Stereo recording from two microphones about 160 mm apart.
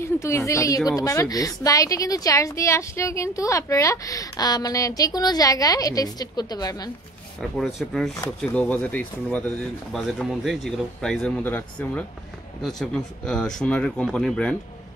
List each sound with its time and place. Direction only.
0.0 s speech: 15° left (ahead or behind)
7.5 s speech: centre (ahead or behind)